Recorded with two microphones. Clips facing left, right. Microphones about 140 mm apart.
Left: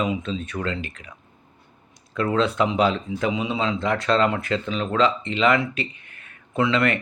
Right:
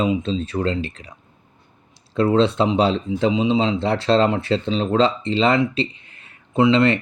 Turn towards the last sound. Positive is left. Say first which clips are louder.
# right 5 dB
turn(degrees=-25)  # may be behind; listen again after turning